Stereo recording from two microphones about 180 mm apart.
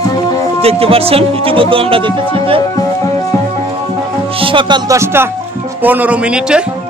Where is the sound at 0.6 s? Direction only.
35° right (ahead or behind).